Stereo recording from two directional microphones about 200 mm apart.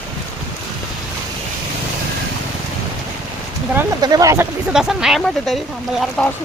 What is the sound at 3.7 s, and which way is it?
Speech, 15° right (ahead or behind).